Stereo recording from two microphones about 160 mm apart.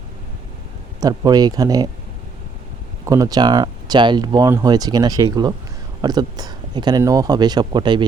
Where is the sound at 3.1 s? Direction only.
20° right (ahead or behind).